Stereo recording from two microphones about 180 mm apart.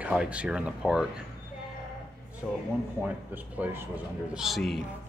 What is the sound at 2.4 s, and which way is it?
A woman's voice, 5° right (ahead or behind).